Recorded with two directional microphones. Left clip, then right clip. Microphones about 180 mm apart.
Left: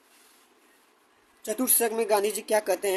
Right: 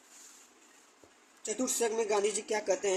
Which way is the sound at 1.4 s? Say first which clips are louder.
Left 5 dB; 50° left (ahead or behind).